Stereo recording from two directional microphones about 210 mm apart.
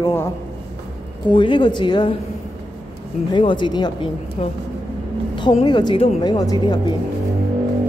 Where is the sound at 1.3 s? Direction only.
25° left (ahead or behind).